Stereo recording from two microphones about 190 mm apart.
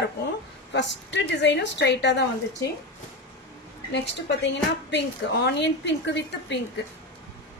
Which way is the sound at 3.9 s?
65° left (ahead or behind).